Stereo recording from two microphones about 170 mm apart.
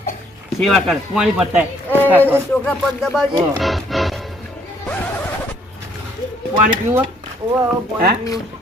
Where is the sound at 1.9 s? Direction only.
10° left (ahead or behind).